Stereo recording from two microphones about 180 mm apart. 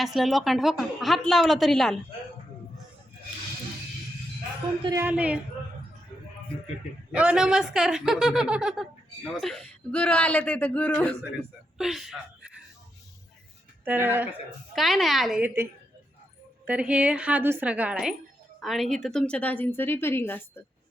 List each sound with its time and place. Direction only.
0.0 s speech: centre (ahead or behind)
4.8 s speech: 20° right (ahead or behind)
5.0 s a woman's voice: 5° right (ahead or behind)
7.1 s a man's voice: 5° right (ahead or behind)
13.8 s a woman's voice: 10° right (ahead or behind)
14.8 s a woman's voice: centre (ahead or behind)